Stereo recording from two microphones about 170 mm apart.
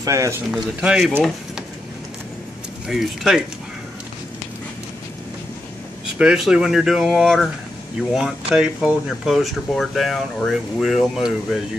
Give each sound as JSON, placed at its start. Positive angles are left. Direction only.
{"t": 0.0, "sound": "speech", "side_deg": -20}
{"t": 0.5, "sound": "speech", "side_deg": -5}
{"t": 2.9, "sound": "speech", "side_deg": 0}
{"t": 6.1, "sound": "speech", "side_deg": -5}